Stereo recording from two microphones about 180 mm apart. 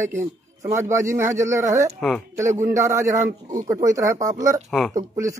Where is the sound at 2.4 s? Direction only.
15° right (ahead or behind).